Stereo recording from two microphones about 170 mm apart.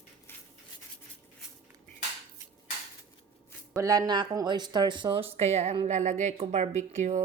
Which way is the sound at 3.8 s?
20° right (ahead or behind).